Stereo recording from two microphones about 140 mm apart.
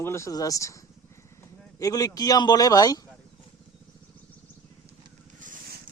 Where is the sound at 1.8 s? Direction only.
25° left (ahead or behind).